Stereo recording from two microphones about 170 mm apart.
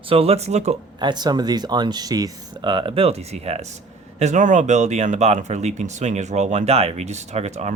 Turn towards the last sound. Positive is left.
turn(degrees=-40)  # may be behind; listen again after turning